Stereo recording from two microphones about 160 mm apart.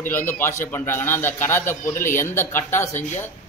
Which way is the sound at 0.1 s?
15° left (ahead or behind).